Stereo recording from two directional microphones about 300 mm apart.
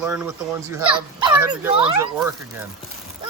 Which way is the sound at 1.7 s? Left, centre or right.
Centre.